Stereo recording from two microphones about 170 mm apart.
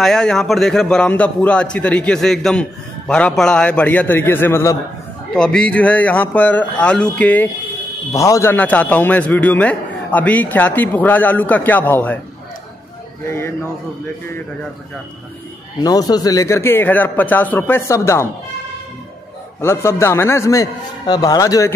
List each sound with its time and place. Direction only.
0.0 s a man's voice: 5° left (ahead or behind)
15.8 s a man's voice: 20° left (ahead or behind)
19.6 s a man's voice: 15° left (ahead or behind)